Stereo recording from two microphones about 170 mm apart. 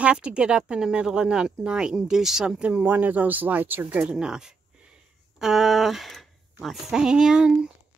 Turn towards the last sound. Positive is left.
turn(degrees=-5)  # may be behind; listen again after turning